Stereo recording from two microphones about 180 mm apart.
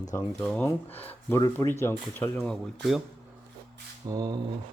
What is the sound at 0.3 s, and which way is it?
Speech, 10° left (ahead or behind).